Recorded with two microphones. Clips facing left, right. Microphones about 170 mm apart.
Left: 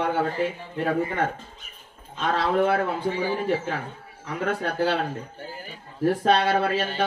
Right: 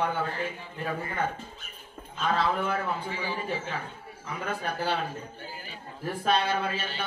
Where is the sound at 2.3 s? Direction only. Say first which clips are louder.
Left 6 dB; 80° left.